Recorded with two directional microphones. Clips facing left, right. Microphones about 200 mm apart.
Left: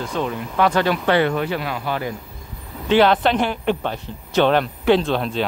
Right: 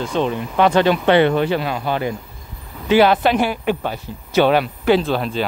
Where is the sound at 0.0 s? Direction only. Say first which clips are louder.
Right 4 dB; 25° right (ahead or behind).